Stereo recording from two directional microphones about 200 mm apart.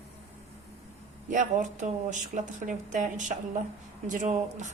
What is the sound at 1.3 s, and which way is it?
Speech, 40° right (ahead or behind).